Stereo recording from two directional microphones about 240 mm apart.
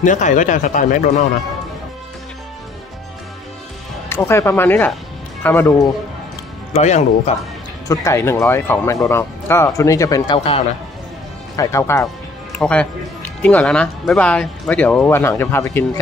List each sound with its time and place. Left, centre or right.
0.0 s a man's voice: left
4.1 s speech: centre
6.7 s speech: left
7.9 s speech: centre